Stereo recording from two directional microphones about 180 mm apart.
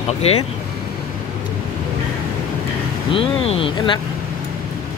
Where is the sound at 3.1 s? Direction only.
30° left (ahead or behind).